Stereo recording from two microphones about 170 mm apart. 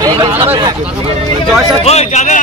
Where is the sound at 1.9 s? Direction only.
40° left (ahead or behind).